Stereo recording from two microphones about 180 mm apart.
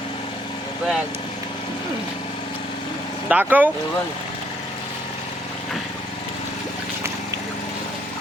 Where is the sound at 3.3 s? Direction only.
10° right (ahead or behind).